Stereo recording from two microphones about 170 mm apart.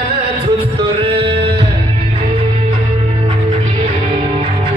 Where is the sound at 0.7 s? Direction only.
35° right (ahead or behind).